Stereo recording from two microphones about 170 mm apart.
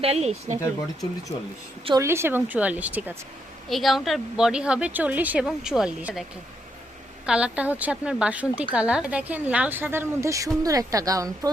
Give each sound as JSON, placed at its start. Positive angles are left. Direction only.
{"t": 0.0, "sound": "speech", "side_deg": -35}
{"t": 2.0, "sound": "a woman's voice", "side_deg": -15}
{"t": 7.3, "sound": "a woman's voice", "side_deg": -5}